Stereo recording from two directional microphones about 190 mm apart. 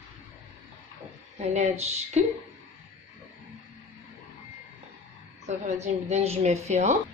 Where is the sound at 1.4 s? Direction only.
35° right (ahead or behind).